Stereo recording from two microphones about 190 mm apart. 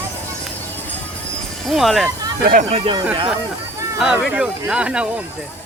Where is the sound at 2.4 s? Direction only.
50° right (ahead or behind).